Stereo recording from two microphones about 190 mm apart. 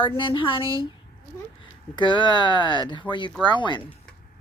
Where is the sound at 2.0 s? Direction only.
25° left (ahead or behind).